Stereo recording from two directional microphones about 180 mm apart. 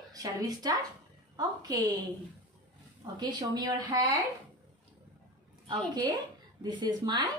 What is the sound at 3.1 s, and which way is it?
A woman's voice, 25° right (ahead or behind).